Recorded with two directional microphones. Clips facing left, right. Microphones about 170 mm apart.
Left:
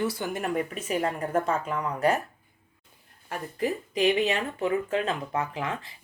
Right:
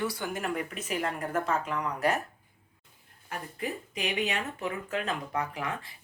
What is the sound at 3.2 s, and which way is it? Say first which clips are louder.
Speech: left 6 dB; 30° left (ahead or behind).